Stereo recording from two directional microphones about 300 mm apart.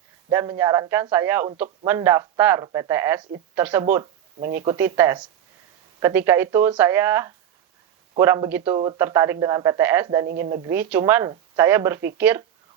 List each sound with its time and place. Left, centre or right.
0.3 s speech: centre
4.4 s speech: right
4.6 s speech: centre